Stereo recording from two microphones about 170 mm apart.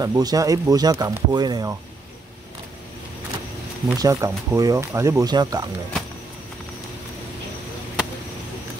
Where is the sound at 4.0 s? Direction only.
20° right (ahead or behind).